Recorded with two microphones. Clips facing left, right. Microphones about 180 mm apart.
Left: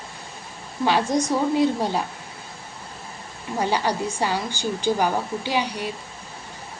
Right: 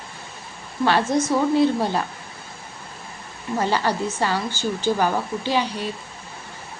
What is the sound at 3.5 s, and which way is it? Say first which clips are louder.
A woman's voice: right 1 dB; 15° left (ahead or behind).